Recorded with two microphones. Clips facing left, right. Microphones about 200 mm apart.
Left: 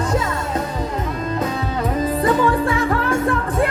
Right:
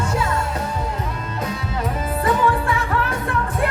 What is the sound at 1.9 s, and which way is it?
Music, 35° left (ahead or behind).